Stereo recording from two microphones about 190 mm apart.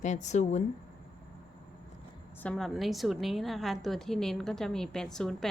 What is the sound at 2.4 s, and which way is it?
A woman's voice, centre (ahead or behind).